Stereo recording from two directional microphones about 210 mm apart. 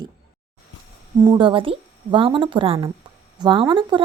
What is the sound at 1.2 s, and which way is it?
A woman's voice, 20° right (ahead or behind).